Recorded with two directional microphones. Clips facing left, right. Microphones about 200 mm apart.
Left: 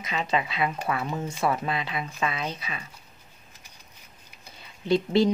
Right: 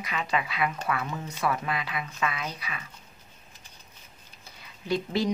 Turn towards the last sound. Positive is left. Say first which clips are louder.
# left 6 dB
turn(degrees=25)  # may be behind; listen again after turning